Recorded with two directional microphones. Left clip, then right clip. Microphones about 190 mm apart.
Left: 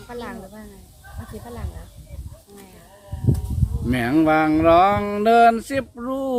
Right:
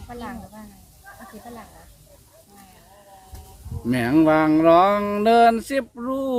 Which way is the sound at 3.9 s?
10° right (ahead or behind).